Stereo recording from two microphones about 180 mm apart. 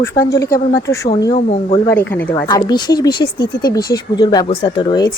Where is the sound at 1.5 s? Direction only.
40° left (ahead or behind).